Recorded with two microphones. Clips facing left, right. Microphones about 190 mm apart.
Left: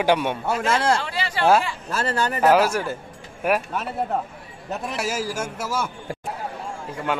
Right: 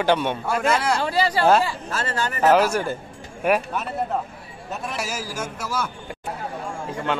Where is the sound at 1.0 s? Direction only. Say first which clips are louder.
Right 2 dB; 40° right (ahead or behind).